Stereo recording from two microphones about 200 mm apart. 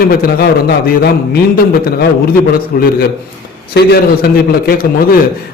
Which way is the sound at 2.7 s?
45° left (ahead or behind).